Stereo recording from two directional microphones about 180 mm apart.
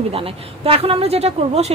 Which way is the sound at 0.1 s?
30° right (ahead or behind).